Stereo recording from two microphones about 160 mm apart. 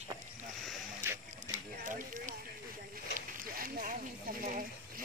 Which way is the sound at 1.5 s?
55° right (ahead or behind).